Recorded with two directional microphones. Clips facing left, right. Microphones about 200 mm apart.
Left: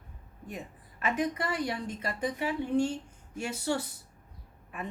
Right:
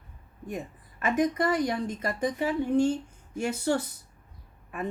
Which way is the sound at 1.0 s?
45° right (ahead or behind).